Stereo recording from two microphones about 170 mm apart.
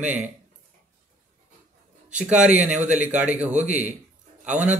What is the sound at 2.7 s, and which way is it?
Speech, 45° right (ahead or behind).